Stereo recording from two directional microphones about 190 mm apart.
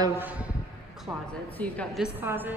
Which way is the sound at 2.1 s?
10° right (ahead or behind).